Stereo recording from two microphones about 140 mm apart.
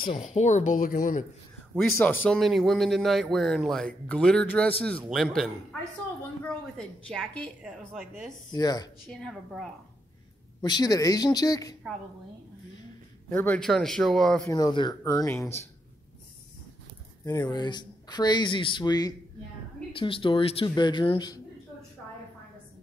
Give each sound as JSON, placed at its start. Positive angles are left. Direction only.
{"t": 0.2, "sound": "a woman's voice", "side_deg": 55}
{"t": 2.0, "sound": "a woman's voice", "side_deg": 15}
{"t": 8.5, "sound": "speech", "side_deg": 30}
{"t": 9.0, "sound": "speech", "side_deg": 0}
{"t": 10.6, "sound": "speech", "side_deg": 30}
{"t": 13.3, "sound": "a woman's voice", "side_deg": 15}
{"t": 13.6, "sound": "speech", "side_deg": 5}
{"t": 14.5, "sound": "speech", "side_deg": 30}
{"t": 17.2, "sound": "speech", "side_deg": 30}